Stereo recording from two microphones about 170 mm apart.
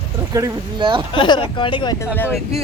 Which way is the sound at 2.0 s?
10° left (ahead or behind).